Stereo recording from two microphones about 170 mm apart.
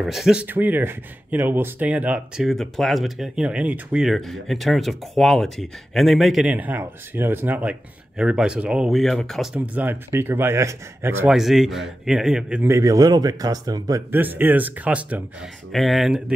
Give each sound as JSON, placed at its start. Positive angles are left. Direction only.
{"t": 0.0, "sound": "speech", "side_deg": 0}
{"t": 11.3, "sound": "speech", "side_deg": 0}
{"t": 12.7, "sound": "speech", "side_deg": -20}